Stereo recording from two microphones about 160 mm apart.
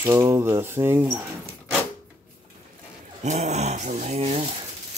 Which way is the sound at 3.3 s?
45° right (ahead or behind).